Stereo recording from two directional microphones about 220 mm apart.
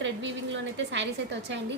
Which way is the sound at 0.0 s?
55° right (ahead or behind).